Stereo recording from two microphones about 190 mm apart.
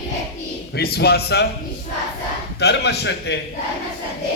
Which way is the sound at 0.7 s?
55° left (ahead or behind).